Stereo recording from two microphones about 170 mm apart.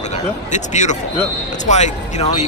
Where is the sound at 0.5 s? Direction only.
45° left (ahead or behind).